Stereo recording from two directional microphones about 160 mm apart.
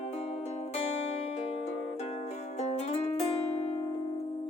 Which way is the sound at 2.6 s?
40° left (ahead or behind).